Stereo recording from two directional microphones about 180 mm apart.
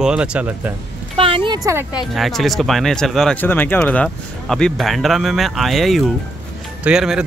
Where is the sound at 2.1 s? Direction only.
Centre (ahead or behind).